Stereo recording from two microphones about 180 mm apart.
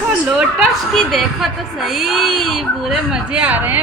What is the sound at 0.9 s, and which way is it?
Speech, centre (ahead or behind).